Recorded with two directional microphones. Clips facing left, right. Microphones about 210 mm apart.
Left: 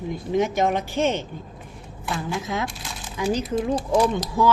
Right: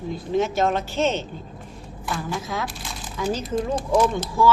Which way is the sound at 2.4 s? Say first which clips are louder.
Left 1 dB; 20° left (ahead or behind).